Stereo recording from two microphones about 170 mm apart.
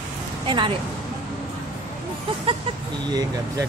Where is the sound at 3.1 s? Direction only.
25° right (ahead or behind).